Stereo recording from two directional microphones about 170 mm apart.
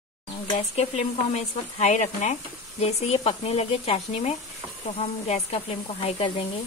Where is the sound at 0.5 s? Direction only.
40° left (ahead or behind).